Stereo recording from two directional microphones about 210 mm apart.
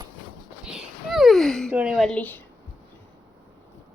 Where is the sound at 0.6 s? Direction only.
Centre (ahead or behind).